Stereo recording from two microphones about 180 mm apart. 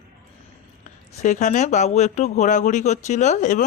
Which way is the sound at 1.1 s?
40° left (ahead or behind).